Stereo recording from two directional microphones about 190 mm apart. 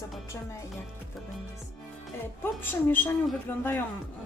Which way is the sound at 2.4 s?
10° left (ahead or behind).